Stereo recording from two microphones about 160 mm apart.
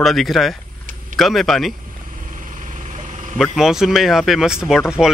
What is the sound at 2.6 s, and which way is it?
Vehicle, 50° right (ahead or behind).